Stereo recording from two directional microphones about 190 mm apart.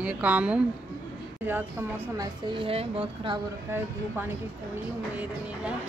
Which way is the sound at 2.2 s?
25° right (ahead or behind).